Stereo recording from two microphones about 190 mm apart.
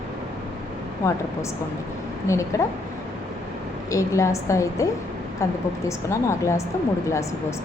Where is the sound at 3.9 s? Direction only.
15° left (ahead or behind).